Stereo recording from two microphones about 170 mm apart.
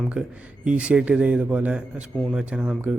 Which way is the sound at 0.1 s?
5° right (ahead or behind).